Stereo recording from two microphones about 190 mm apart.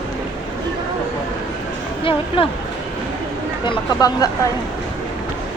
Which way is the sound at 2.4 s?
30° left (ahead or behind).